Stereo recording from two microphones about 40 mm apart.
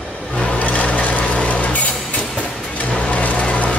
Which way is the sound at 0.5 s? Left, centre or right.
Left.